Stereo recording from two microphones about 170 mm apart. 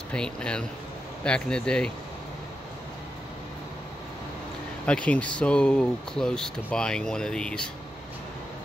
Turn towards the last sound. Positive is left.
turn(degrees=5)  # may be behind; listen again after turning